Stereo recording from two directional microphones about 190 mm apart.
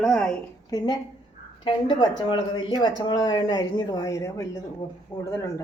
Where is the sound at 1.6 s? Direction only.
25° left (ahead or behind).